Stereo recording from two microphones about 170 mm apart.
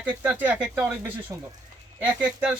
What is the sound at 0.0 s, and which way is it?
Speech, 10° right (ahead or behind).